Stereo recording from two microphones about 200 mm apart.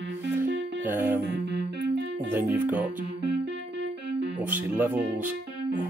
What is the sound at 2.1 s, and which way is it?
Speech, 10° right (ahead or behind).